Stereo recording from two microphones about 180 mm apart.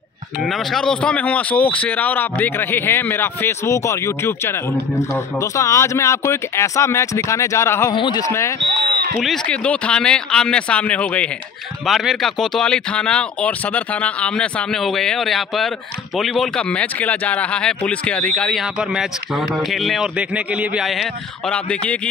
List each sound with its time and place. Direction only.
0.4 s speech: centre (ahead or behind)
7.9 s speech: 25° left (ahead or behind)
9.2 s speech: 5° left (ahead or behind)